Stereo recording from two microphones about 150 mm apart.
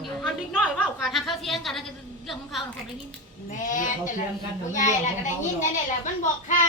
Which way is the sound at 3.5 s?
60° left (ahead or behind).